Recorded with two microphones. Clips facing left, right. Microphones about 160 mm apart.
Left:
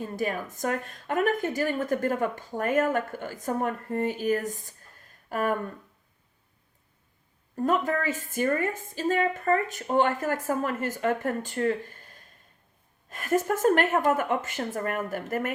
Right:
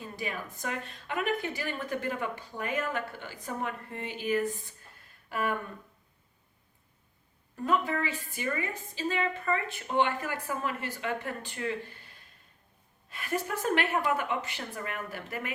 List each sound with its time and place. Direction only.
0.0 s a woman's voice: 45° left (ahead or behind)
7.5 s a woman's voice: 45° left (ahead or behind)